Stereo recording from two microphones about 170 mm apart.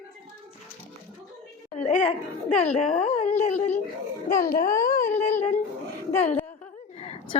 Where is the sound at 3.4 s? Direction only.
45° left (ahead or behind).